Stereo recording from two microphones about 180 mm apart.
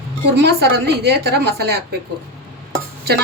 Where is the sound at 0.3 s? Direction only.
70° right (ahead or behind).